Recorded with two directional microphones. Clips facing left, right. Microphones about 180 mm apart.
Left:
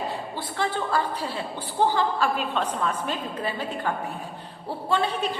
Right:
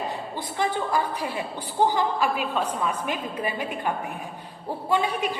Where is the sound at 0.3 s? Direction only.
15° right (ahead or behind).